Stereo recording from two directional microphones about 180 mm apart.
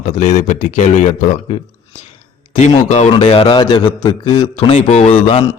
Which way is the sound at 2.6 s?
40° left (ahead or behind).